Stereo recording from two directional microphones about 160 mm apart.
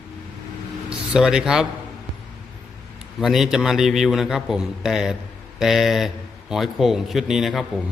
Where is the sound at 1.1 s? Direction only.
5° right (ahead or behind).